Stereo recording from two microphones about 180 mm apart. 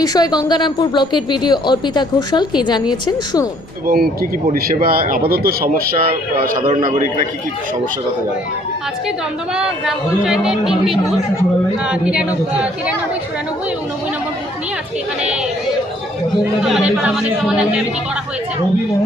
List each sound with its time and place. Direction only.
0.0 s speech: 20° left (ahead or behind)
3.8 s speech: 55° right (ahead or behind)
6.6 s a man's voice: 25° right (ahead or behind)
6.8 s a man's voice: 50° right (ahead or behind)
9.6 s speech: 5° right (ahead or behind)
16.6 s speech: 5° right (ahead or behind)